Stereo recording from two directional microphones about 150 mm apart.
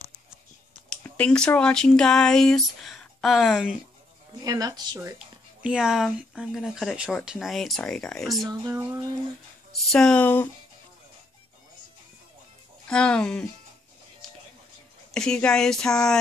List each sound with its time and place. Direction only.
1.0 s speech: 10° left (ahead or behind)
4.4 s speech: 25° right (ahead or behind)
5.6 s speech: 5° right (ahead or behind)
8.5 s speech: 25° right (ahead or behind)
9.8 s speech: 5° left (ahead or behind)
12.8 s speech: 5° left (ahead or behind)
15.0 s speech: 5° left (ahead or behind)